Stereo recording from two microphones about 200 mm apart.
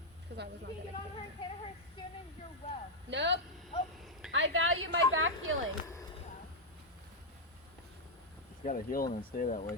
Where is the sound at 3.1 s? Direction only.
60° right (ahead or behind); by 5.5 s 85° right.